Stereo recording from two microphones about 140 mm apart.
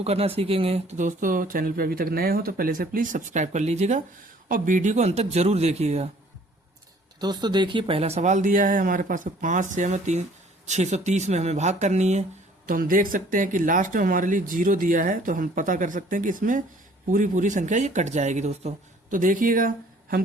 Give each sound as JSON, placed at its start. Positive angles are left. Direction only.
{"t": 0.0, "sound": "speech", "side_deg": -45}
{"t": 0.9, "sound": "speech", "side_deg": -65}
{"t": 4.4, "sound": "speech", "side_deg": -75}
{"t": 7.2, "sound": "speech", "side_deg": -30}
{"t": 12.6, "sound": "speech", "side_deg": -85}
{"t": 19.1, "sound": "speech", "side_deg": -70}